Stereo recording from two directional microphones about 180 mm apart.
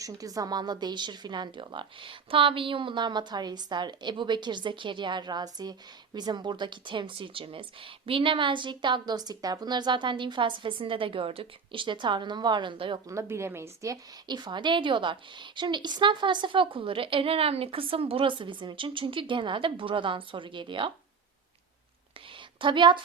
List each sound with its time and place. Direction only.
0.0 s a woman's voice: 20° right (ahead or behind)
13.1 s a woman's voice: 15° right (ahead or behind)
22.6 s a woman's voice: 25° right (ahead or behind)